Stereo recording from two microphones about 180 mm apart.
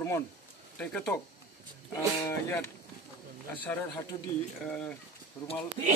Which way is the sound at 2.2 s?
15° left (ahead or behind).